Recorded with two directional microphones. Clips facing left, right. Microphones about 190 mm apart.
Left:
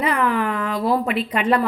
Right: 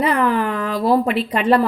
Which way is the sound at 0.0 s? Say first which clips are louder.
Right 3 dB; 35° right (ahead or behind).